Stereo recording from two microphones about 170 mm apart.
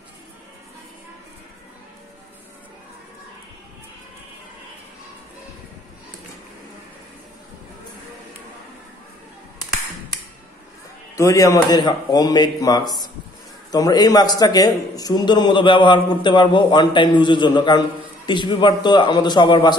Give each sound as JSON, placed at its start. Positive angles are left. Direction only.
{"t": 11.1, "sound": "a man's voice", "side_deg": 20}